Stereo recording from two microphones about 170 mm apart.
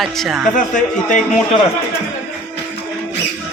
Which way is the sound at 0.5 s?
50° left (ahead or behind).